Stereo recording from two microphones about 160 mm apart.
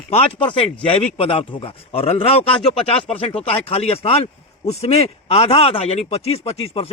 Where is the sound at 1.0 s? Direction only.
35° left (ahead or behind).